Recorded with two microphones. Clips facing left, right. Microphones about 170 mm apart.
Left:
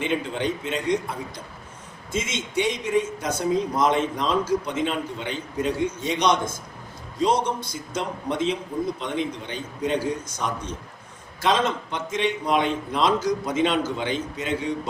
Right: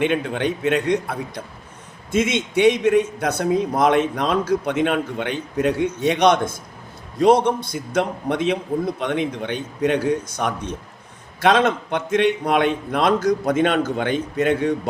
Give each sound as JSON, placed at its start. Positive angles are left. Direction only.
{"t": 0.0, "sound": "a man's voice", "side_deg": -60}